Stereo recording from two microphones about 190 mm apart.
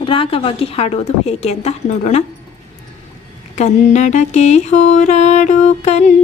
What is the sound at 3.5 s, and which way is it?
Mantra, 35° left (ahead or behind).